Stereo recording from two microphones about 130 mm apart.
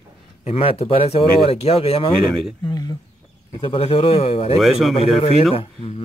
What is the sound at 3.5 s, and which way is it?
Speech, 45° left (ahead or behind).